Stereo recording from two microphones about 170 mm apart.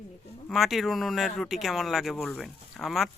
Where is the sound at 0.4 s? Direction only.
Centre (ahead or behind).